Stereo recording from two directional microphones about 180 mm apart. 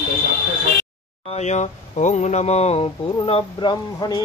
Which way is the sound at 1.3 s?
40° left (ahead or behind).